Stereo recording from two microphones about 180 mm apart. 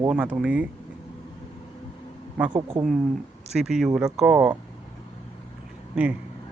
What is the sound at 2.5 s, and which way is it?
Speech, 25° right (ahead or behind).